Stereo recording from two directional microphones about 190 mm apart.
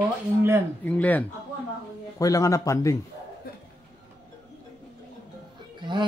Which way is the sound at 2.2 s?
15° left (ahead or behind).